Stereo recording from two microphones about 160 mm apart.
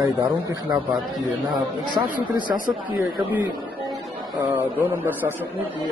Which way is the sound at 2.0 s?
15° right (ahead or behind).